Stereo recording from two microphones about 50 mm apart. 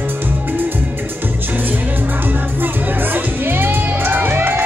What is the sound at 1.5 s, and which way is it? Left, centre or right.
Music, right.